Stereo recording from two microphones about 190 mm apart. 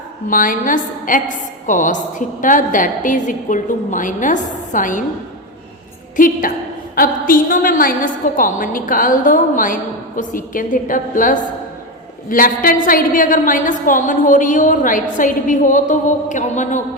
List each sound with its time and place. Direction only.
0.3 s a woman's voice: 45° left (ahead or behind)
6.1 s a woman's voice: 45° left (ahead or behind)